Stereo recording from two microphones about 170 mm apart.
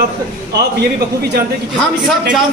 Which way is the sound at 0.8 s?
75° right (ahead or behind).